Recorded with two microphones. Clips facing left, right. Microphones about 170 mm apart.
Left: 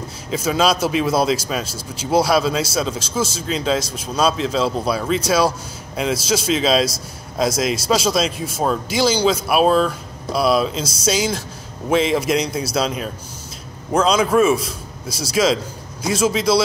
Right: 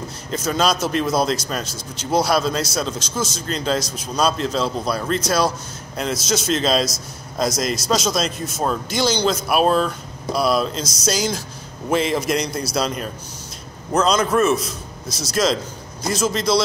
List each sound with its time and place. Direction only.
0.3 s speech: 5° left (ahead or behind)
15.0 s speech: 30° left (ahead or behind)
15.3 s a man's voice: 5° left (ahead or behind)